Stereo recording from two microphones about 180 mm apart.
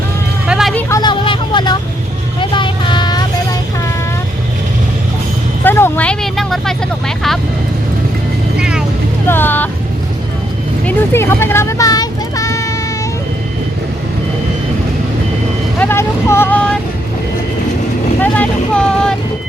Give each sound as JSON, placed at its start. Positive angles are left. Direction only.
{"t": 0.4, "sound": "a sound", "side_deg": -5}
{"t": 0.7, "sound": "vehicle", "side_deg": 10}
{"t": 5.6, "sound": "vehicle", "side_deg": 10}
{"t": 8.5, "sound": "vehicle", "side_deg": -5}
{"t": 9.2, "sound": "vehicle", "side_deg": 10}
{"t": 10.8, "sound": "vehicle", "side_deg": 15}
{"t": 15.8, "sound": "vehicle", "side_deg": 15}
{"t": 18.2, "sound": "vehicle", "side_deg": 5}